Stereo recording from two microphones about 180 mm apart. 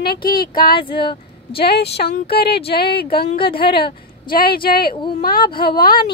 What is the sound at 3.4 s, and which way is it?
Speech, 30° left (ahead or behind).